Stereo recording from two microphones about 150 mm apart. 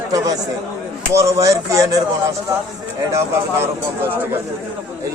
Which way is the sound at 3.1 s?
15° right (ahead or behind).